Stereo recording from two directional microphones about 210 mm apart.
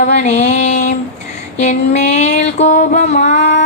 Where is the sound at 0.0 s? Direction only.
35° left (ahead or behind).